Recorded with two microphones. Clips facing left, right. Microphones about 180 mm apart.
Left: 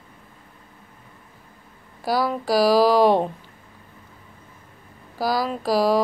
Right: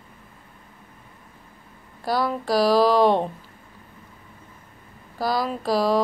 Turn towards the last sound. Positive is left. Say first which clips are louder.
# left 2 dB
turn(degrees=0)  # may be behind; listen again after turning